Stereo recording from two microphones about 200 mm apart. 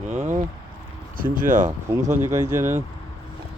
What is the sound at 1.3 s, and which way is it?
Speech, 40° right (ahead or behind).